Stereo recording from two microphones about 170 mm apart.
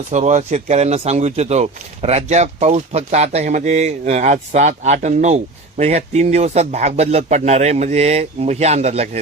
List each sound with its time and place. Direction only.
0.1 s speech: 45° right (ahead or behind)